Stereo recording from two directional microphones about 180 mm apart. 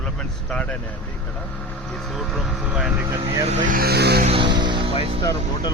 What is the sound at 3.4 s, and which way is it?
Speech, 40° right (ahead or behind).